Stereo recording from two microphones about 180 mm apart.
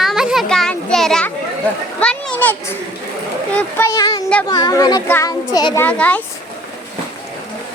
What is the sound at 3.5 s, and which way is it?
A child's voice, 10° left (ahead or behind).